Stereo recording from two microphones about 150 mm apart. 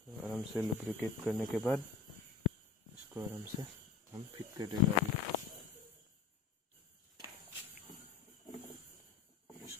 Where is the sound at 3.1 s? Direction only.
20° right (ahead or behind).